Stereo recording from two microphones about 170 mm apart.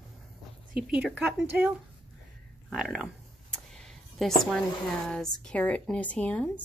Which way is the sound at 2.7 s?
Centre (ahead or behind).